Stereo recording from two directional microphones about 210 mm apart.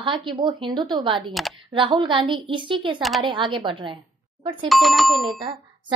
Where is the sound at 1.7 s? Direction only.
25° right (ahead or behind).